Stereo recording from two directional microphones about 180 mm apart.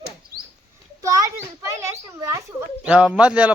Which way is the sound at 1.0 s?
20° right (ahead or behind).